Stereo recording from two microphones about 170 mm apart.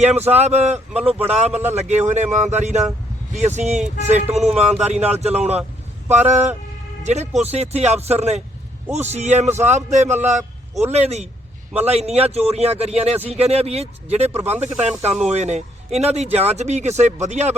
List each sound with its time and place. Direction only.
0.0 s a man's voice: 40° right (ahead or behind)